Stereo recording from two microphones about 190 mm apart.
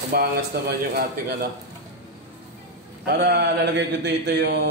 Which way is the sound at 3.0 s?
60° right (ahead or behind).